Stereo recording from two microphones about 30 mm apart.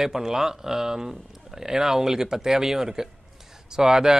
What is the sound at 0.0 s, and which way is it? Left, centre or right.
Speech, centre.